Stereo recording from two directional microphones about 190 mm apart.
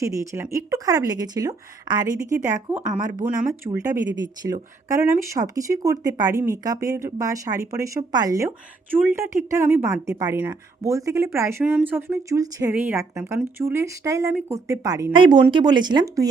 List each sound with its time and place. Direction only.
0.0 s a woman's voice: 15° right (ahead or behind)
3.0 s speech: 40° right (ahead or behind)
3.7 s a woman's voice: 20° right (ahead or behind)